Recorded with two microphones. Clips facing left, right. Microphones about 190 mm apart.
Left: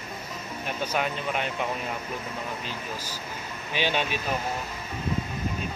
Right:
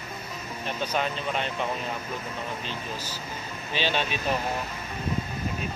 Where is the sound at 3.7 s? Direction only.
15° left (ahead or behind).